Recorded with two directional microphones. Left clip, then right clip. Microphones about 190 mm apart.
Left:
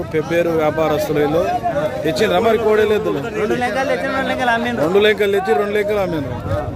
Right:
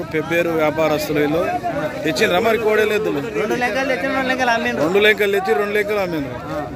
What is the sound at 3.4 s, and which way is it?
A man's voice, 35° right (ahead or behind).